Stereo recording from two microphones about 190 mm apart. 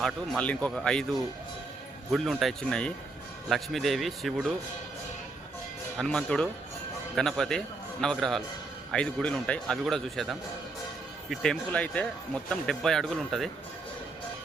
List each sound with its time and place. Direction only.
0.0 s speech: 5° left (ahead or behind)
2.1 s speech: centre (ahead or behind)
6.0 s speech: 5° left (ahead or behind)